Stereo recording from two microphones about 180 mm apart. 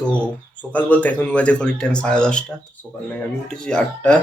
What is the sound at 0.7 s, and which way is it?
Speech, 10° left (ahead or behind).